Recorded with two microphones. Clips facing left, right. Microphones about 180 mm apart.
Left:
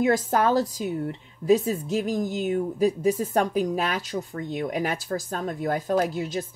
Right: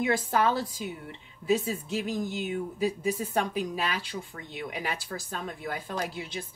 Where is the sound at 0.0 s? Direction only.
45° left (ahead or behind).